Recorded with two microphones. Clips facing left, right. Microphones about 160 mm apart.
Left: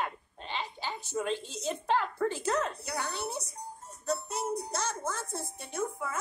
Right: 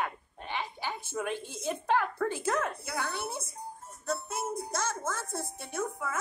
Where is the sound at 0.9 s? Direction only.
15° left (ahead or behind).